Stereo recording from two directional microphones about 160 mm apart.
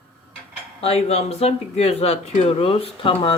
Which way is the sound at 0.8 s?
40° left (ahead or behind).